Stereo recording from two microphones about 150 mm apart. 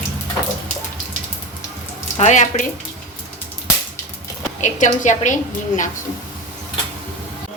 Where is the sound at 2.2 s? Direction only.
55° left (ahead or behind).